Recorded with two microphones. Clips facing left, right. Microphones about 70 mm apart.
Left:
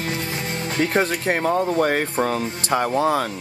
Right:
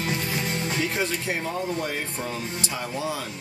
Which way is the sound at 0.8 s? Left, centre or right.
Left.